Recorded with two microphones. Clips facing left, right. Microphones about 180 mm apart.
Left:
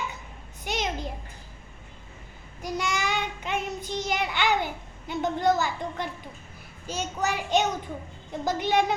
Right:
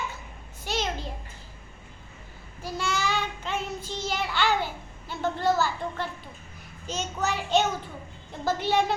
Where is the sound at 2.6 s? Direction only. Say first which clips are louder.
Even; 15° left (ahead or behind).